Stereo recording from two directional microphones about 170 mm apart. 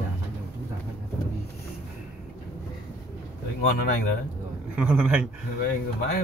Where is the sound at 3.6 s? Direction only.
60° left (ahead or behind).